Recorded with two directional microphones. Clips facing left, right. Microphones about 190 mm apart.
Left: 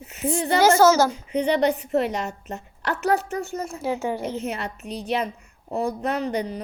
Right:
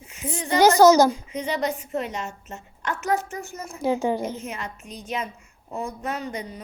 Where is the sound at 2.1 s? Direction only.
35° left (ahead or behind).